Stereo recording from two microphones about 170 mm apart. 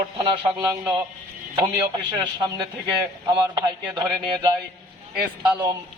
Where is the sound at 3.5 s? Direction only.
25° right (ahead or behind).